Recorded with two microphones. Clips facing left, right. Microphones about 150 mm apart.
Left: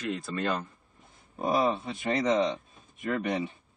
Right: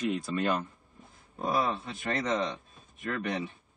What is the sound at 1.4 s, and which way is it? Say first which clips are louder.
Speech: left 3 dB; 15° left (ahead or behind).